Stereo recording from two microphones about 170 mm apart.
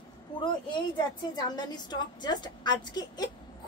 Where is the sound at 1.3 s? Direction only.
25° left (ahead or behind).